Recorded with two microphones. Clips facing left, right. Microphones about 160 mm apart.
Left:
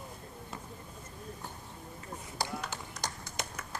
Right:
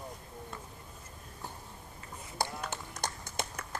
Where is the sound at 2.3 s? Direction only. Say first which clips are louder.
Right 2 dB; 50° right (ahead or behind).